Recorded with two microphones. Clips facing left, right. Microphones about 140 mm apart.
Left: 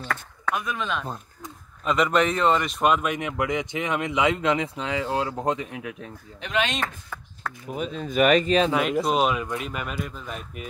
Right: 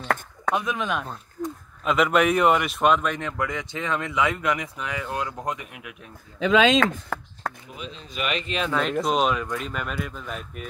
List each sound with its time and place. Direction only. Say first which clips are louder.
0.5 s speech: right 3 dB; 25° right (ahead or behind)
0.7 s speech: right 2 dB; 10° right (ahead or behind)
1.4 s speech: right 10 dB; centre (ahead or behind); by 5.9 s 30° left (ahead or behind)
7.1 s chop: right 8 dB; 65° right (ahead or behind)
7.6 s speech: left 9 dB; 50° left (ahead or behind)
8.7 s speech: left 1 dB; 5° left (ahead or behind)